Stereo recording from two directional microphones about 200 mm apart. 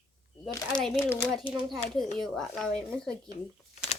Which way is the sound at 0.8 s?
Centre (ahead or behind).